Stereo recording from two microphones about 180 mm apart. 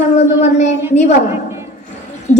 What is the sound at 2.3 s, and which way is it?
Speech, 10° left (ahead or behind).